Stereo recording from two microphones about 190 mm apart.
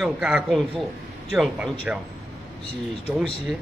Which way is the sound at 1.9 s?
5° right (ahead or behind).